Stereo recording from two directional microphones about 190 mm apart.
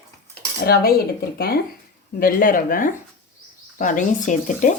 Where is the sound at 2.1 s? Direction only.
50° left (ahead or behind).